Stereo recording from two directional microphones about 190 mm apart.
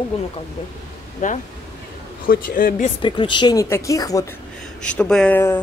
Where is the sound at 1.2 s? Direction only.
40° left (ahead or behind).